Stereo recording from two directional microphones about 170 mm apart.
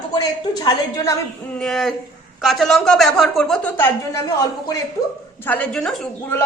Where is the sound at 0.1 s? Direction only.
25° left (ahead or behind).